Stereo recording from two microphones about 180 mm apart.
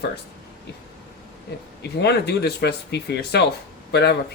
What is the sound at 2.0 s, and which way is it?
Speech, 65° left (ahead or behind).